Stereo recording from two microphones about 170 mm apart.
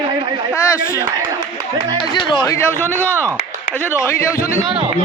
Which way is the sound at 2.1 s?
25° left (ahead or behind).